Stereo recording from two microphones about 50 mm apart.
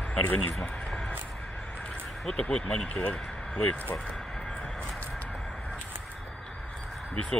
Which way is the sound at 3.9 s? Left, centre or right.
Centre.